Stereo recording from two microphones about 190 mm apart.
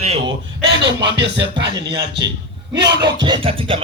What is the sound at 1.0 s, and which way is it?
Music, 65° right (ahead or behind).